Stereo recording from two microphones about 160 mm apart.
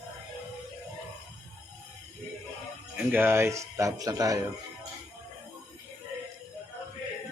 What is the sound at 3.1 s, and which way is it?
Speech, 15° right (ahead or behind).